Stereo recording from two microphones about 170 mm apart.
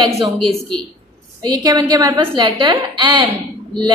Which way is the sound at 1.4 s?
25° right (ahead or behind).